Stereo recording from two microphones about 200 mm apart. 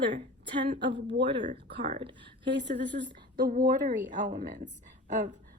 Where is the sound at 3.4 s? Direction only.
45° right (ahead or behind).